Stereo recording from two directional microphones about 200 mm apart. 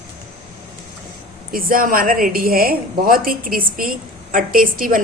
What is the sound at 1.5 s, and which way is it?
A woman's voice, 45° right (ahead or behind).